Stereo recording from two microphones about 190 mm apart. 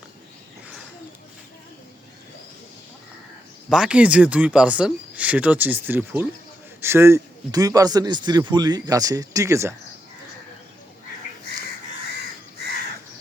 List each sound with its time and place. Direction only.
3.7 s a man's voice: 5° right (ahead or behind)